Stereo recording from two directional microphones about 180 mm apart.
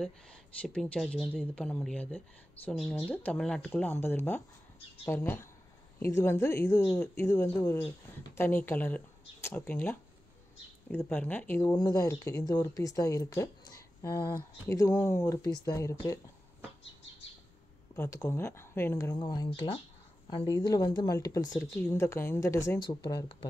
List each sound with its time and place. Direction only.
0.0 s speech: 5° left (ahead or behind)
17.9 s speech: 15° left (ahead or behind)
19.1 s speech: 25° left (ahead or behind)